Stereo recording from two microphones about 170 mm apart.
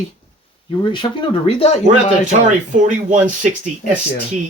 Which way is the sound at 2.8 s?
45° right (ahead or behind).